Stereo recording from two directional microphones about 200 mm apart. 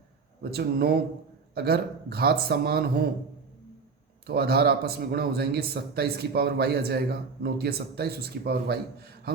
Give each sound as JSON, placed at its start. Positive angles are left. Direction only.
{"t": 0.5, "sound": "speech", "side_deg": -50}
{"t": 4.3, "sound": "speech", "side_deg": -50}